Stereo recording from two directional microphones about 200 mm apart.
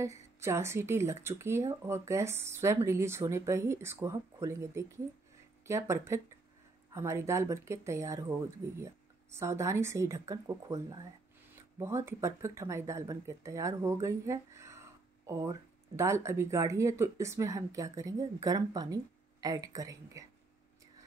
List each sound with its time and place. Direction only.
0.0 s speech: 15° right (ahead or behind)